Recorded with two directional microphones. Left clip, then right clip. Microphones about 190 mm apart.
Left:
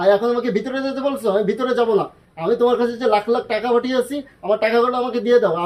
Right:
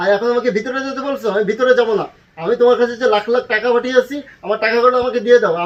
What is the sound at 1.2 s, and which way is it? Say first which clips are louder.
Speech: right 5 dB; 30° left (ahead or behind).